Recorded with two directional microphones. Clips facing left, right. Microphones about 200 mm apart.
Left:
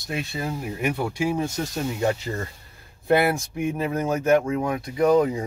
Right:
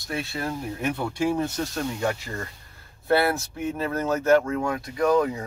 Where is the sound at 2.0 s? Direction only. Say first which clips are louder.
Left 3 dB; 20° left (ahead or behind).